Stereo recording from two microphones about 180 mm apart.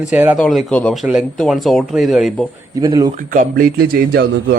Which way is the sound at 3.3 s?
45° right (ahead or behind).